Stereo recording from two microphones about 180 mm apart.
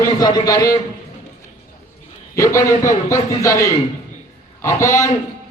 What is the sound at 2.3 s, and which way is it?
A man's voice, 15° left (ahead or behind).